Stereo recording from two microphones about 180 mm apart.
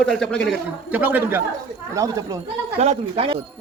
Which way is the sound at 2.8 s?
35° right (ahead or behind).